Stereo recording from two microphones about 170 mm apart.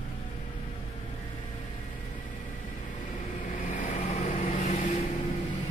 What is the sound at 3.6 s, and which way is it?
Vehicle, 45° left (ahead or behind).